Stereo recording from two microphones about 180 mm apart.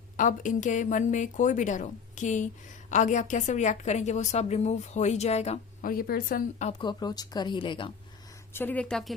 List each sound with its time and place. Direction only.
0.2 s a woman's voice: 45° left (ahead or behind)
5.9 s a woman's voice: 55° left (ahead or behind); by 6.8 s 40° left (ahead or behind)
6.8 s speech: 20° left (ahead or behind)
8.5 s speech: 10° left (ahead or behind)